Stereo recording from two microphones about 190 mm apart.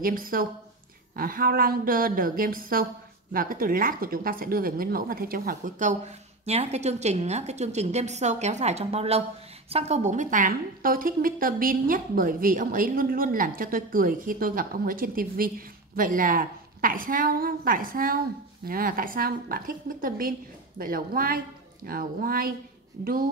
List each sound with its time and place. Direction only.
0.0 s a woman's voice: 50° right (ahead or behind)